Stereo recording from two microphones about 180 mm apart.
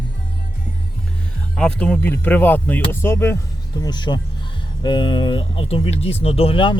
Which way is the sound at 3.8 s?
25° left (ahead or behind).